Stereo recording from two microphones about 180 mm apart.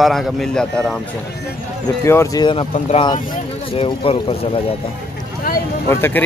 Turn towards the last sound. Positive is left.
turn(degrees=15)  # may be behind; listen again after turning